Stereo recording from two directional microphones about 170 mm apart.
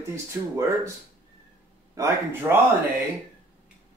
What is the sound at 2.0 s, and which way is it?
Speech, 20° right (ahead or behind).